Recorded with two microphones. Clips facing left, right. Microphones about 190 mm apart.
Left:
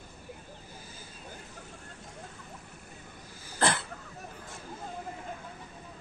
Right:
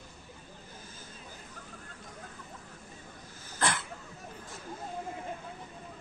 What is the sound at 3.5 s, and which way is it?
Throat clearing, 30° left (ahead or behind).